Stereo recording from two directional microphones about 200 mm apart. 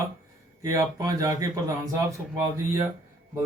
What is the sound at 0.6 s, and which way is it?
Speech, 15° right (ahead or behind).